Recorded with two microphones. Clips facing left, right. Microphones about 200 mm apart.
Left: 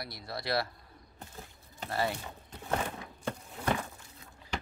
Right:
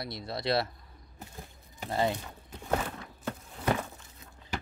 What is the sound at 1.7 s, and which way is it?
Speech, 20° right (ahead or behind).